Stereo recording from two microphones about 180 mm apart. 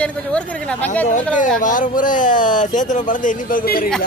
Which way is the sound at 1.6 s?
45° left (ahead or behind).